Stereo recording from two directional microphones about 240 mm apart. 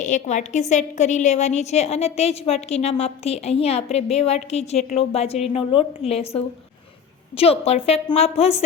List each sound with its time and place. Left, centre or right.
0.0 s a woman's voice: left